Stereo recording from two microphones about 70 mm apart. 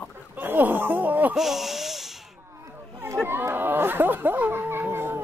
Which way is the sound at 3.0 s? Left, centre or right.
Right.